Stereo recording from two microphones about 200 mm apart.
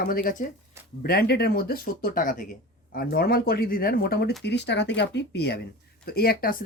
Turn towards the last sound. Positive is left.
turn(degrees=45)  # may be behind; listen again after turning